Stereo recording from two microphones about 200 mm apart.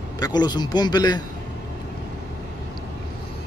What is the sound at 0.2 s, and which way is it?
A man's voice, 20° left (ahead or behind).